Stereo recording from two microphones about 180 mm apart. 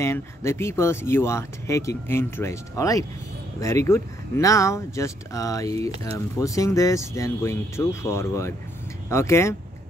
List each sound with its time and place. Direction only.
0.0 s speech: 15° left (ahead or behind)